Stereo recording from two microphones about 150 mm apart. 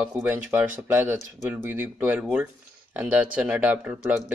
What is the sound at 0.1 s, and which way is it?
Speech, 15° right (ahead or behind).